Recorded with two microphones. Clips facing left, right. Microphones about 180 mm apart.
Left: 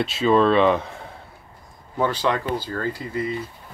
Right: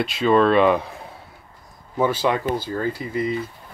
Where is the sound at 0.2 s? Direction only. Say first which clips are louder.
Right 1 dB; centre (ahead or behind).